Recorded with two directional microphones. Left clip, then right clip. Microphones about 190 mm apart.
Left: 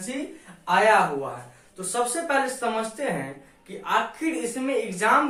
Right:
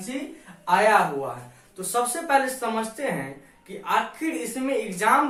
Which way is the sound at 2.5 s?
15° right (ahead or behind).